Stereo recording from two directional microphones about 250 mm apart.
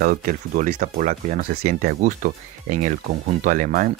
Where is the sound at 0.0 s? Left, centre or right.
Right.